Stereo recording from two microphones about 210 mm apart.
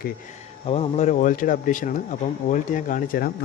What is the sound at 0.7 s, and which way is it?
Speech, 30° left (ahead or behind).